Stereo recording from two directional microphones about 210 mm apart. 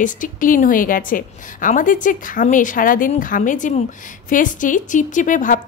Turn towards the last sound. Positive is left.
turn(degrees=40)  # may be behind; listen again after turning